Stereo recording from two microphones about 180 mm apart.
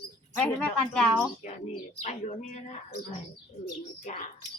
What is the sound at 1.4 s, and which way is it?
Speech, 50° left (ahead or behind).